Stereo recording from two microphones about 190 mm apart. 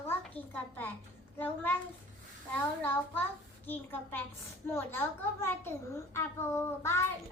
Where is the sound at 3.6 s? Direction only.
10° left (ahead or behind).